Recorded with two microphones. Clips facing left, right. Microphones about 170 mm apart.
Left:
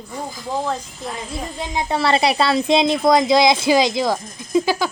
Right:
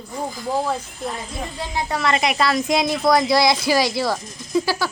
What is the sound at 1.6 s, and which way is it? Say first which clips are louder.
Speech: left 3 dB; 20° left (ahead or behind).